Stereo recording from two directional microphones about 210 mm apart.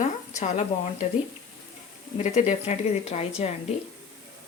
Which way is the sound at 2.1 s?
35° left (ahead or behind).